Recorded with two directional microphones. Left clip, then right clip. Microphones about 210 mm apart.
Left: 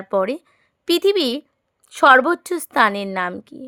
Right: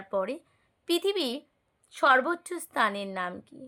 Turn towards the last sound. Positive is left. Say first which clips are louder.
# left 10 dB
turn(degrees=50)  # may be behind; listen again after turning